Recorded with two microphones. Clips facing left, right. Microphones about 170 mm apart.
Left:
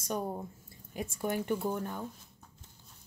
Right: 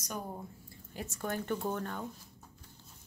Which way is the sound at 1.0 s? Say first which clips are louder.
Left 4 dB; 15° left (ahead or behind).